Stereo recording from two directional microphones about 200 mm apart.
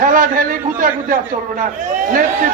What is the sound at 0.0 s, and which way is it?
A man's voice, 40° right (ahead or behind).